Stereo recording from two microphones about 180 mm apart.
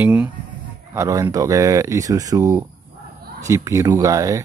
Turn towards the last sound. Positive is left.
turn(degrees=-20)  # may be behind; listen again after turning